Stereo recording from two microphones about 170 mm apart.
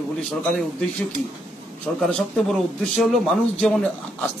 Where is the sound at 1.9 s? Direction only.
5° left (ahead or behind).